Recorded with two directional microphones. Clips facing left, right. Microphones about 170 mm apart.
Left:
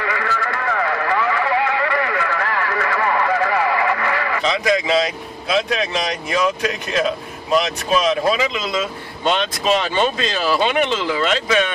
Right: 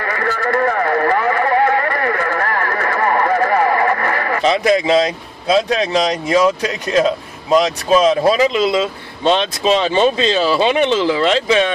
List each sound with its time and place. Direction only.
0.0 s radio: 45° right (ahead or behind)
5.5 s speech: 35° right (ahead or behind)
8.2 s speech: 35° right (ahead or behind)